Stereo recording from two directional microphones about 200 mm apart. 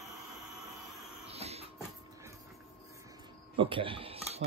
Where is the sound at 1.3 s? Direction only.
30° right (ahead or behind).